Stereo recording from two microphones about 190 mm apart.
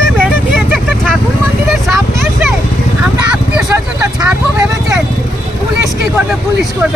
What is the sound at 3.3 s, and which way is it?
Vehicle, 5° right (ahead or behind).